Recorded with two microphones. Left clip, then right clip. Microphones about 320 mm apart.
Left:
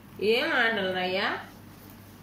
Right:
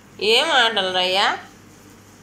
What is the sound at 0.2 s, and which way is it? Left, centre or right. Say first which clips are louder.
Speech: right 8 dB; right.